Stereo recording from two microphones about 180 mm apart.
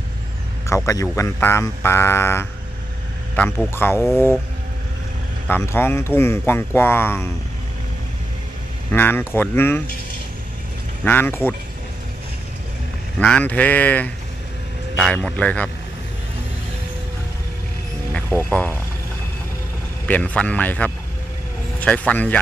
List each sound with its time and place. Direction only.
0.7 s speech: 15° left (ahead or behind)
5.5 s speech: 15° left (ahead or behind)
8.9 s speech: 10° left (ahead or behind)
11.1 s speech: 10° left (ahead or behind)
13.2 s speech: 5° left (ahead or behind)
18.3 s speech: 5° left (ahead or behind)
20.1 s speech: 5° left (ahead or behind)